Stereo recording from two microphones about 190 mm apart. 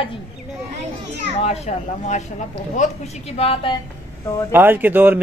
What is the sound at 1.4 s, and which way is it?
Speech, 35° left (ahead or behind).